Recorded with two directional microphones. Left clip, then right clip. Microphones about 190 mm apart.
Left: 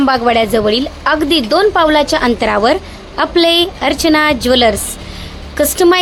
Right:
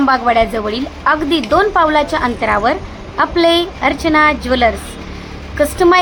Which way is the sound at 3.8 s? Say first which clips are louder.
Even; 50° left (ahead or behind).